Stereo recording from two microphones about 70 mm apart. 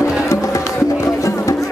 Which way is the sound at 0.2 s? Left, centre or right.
Left.